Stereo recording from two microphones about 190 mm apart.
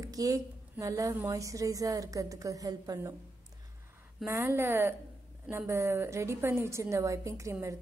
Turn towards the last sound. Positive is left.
turn(degrees=-15)  # may be behind; listen again after turning